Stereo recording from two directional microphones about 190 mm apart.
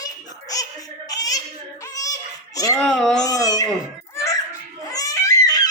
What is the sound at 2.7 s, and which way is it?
Speech, centre (ahead or behind).